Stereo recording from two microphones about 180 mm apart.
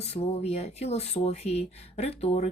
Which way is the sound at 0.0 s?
35° left (ahead or behind).